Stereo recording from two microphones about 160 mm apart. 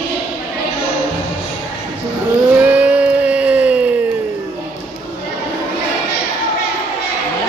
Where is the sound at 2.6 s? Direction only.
10° right (ahead or behind).